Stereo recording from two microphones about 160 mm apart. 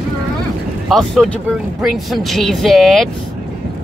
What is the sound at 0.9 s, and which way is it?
Speech, centre (ahead or behind).